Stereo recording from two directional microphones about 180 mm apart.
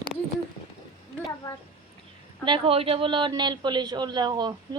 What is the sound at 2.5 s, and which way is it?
Speech, 30° right (ahead or behind).